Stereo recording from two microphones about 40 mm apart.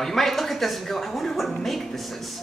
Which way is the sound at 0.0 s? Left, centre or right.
Centre.